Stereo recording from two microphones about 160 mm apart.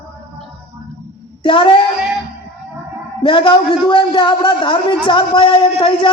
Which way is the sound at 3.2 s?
30° left (ahead or behind).